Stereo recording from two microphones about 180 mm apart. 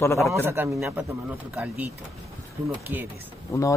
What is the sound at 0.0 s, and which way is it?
Speech, 15° left (ahead or behind).